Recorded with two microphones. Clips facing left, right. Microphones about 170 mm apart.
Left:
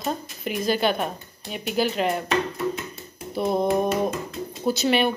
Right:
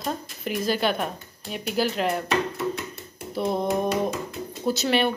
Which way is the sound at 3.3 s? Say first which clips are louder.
Left 3 dB; centre (ahead or behind).